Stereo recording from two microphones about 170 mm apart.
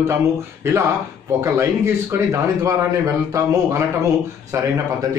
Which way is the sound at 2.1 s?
20° right (ahead or behind).